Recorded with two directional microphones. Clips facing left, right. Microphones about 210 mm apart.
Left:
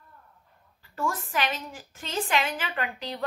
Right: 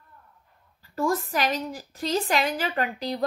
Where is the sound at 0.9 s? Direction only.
40° right (ahead or behind).